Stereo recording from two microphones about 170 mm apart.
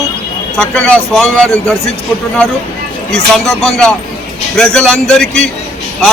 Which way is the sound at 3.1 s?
Centre (ahead or behind).